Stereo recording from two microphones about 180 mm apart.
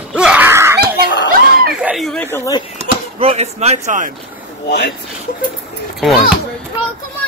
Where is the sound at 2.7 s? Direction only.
35° right (ahead or behind).